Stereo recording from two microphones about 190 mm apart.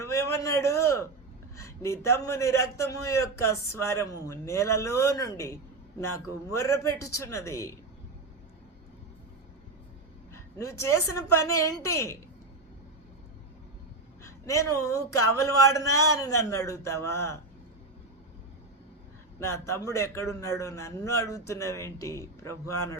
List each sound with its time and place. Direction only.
0.1 s a man's voice: 15° left (ahead or behind)
10.3 s a man's voice: 15° left (ahead or behind)
14.3 s a man's voice: 15° left (ahead or behind)
19.4 s a man's voice: 15° left (ahead or behind)